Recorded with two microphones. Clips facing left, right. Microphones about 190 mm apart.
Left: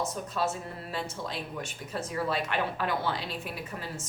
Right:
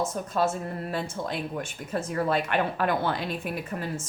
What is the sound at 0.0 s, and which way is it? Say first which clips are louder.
Speech: right 5 dB; 50° right (ahead or behind).